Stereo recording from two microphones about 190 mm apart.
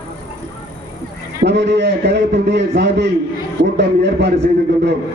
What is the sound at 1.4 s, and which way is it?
A man's voice, 65° right (ahead or behind).